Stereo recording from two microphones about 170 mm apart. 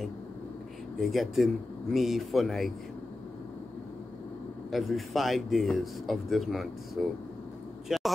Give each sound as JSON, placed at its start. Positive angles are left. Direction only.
{"t": 1.0, "sound": "speech", "side_deg": 0}
{"t": 4.6, "sound": "speech", "side_deg": 0}
{"t": 7.9, "sound": "a sound", "side_deg": -5}